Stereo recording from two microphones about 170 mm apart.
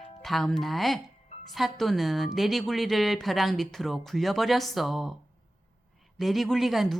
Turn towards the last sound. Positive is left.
turn(degrees=0)  # may be behind; listen again after turning